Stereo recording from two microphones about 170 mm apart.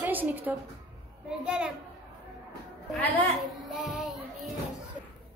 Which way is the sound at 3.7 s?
Centre (ahead or behind).